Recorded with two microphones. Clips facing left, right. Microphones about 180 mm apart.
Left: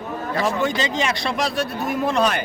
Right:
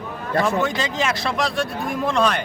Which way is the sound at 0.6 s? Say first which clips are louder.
Left 1 dB; centre (ahead or behind).